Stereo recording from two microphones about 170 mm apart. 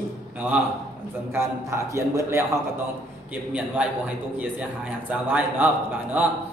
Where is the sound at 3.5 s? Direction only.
10° right (ahead or behind).